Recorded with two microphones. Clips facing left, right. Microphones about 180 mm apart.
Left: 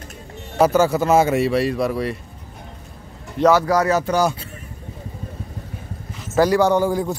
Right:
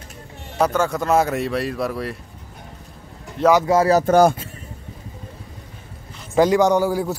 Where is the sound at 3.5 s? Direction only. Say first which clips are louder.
Right 3 dB; 20° right (ahead or behind).